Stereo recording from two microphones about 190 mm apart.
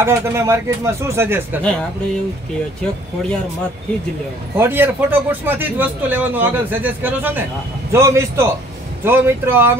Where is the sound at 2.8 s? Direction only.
5° left (ahead or behind).